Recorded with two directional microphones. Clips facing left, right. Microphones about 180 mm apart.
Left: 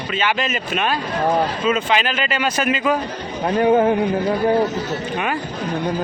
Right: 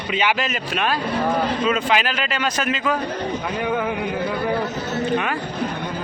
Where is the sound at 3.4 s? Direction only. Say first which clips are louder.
Left 11 dB; 45° left (ahead or behind).